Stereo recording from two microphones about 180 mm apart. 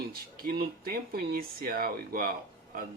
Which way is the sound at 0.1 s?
55° right (ahead or behind).